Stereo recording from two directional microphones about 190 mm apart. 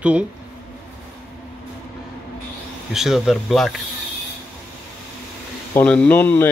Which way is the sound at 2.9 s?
Centre (ahead or behind).